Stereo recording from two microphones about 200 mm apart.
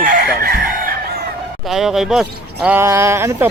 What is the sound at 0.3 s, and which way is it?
Chicken, 50° right (ahead or behind).